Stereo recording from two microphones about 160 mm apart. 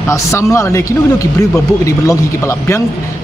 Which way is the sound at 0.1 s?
20° left (ahead or behind).